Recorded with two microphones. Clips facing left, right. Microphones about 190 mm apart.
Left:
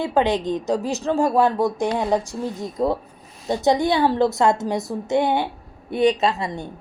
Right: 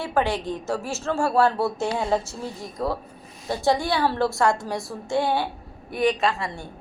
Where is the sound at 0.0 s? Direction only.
20° left (ahead or behind).